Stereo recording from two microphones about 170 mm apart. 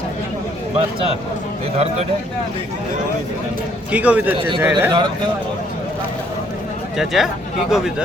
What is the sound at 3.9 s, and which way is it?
Speech, 10° right (ahead or behind).